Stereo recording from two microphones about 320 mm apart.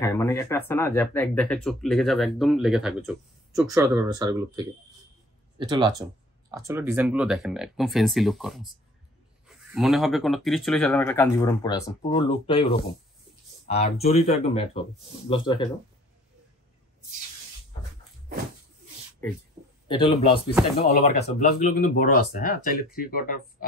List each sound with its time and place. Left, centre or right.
0.0 s speech: centre
9.8 s speech: centre
19.9 s speech: centre